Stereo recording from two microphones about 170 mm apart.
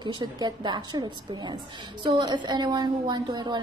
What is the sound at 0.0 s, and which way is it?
A woman's voice, 25° right (ahead or behind).